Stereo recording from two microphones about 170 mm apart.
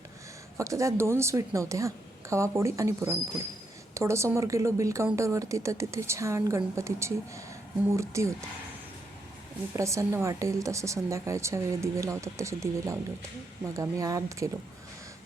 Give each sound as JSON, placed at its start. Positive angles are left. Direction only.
{"t": 0.5, "sound": "a woman's voice", "side_deg": -20}
{"t": 9.7, "sound": "a woman's voice", "side_deg": -15}